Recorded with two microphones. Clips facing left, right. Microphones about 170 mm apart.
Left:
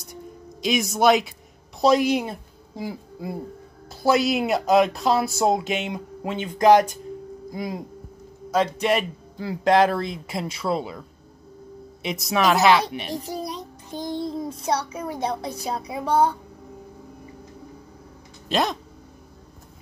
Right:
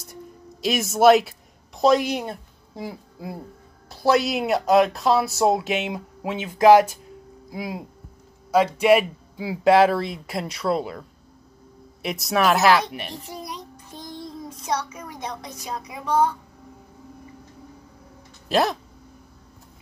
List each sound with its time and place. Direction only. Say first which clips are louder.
0.0 s a sound: left 1 dB; centre (ahead or behind)
1.8 s a woman's voice: even; centre (ahead or behind)
12.0 s speech: right 1 dB; centre (ahead or behind)
13.1 s a child's voice: left 6 dB; 35° left (ahead or behind)
18.5 s speech: right 2 dB; 5° right (ahead or behind)